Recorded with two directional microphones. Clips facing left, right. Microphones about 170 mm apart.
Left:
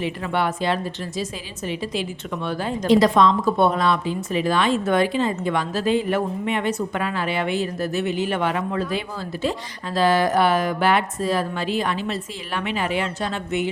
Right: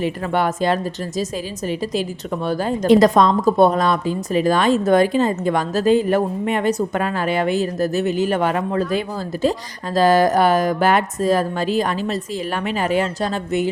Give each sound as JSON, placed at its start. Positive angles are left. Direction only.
{"t": 0.0, "sound": "a woman's voice", "side_deg": -45}